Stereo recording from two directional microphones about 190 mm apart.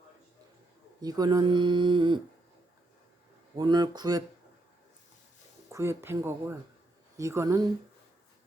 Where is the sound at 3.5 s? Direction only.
20° right (ahead or behind).